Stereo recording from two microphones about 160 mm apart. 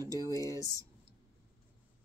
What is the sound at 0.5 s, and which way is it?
Speech, 20° left (ahead or behind).